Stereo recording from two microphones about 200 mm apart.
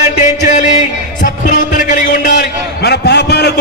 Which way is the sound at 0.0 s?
35° left (ahead or behind).